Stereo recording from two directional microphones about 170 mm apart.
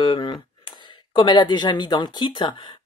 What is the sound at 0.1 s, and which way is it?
Speech, 30° left (ahead or behind).